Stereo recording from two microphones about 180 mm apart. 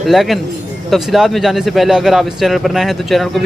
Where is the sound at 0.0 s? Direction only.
Centre (ahead or behind).